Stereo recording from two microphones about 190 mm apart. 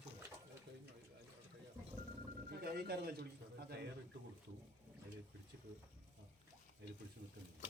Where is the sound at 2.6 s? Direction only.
55° right (ahead or behind).